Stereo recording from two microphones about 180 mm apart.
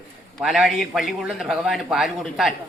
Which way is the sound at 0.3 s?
Centre (ahead or behind).